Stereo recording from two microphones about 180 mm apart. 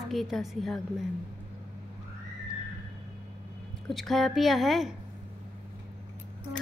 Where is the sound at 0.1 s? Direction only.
Centre (ahead or behind).